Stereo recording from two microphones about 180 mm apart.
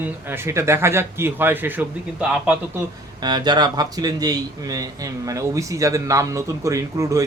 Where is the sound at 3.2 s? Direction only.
25° right (ahead or behind).